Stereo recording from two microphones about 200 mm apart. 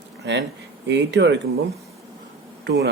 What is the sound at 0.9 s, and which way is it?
Speech, 60° right (ahead or behind).